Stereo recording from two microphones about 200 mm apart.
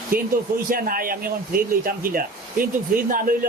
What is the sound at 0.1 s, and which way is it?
A man's voice, 45° right (ahead or behind).